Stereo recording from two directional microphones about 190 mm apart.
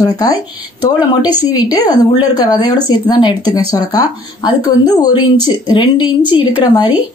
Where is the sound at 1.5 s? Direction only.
20° left (ahead or behind).